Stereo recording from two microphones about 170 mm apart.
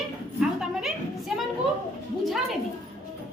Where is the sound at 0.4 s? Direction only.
5° right (ahead or behind).